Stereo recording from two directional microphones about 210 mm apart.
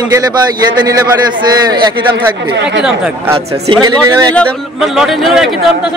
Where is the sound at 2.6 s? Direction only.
55° right (ahead or behind).